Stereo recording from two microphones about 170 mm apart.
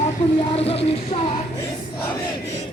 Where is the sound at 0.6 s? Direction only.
35° left (ahead or behind).